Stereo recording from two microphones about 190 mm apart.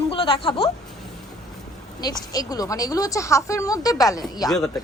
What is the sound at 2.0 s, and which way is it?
A woman's voice, 20° left (ahead or behind).